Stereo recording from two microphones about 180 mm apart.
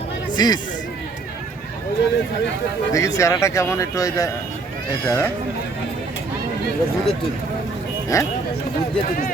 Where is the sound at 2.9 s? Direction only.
15° left (ahead or behind).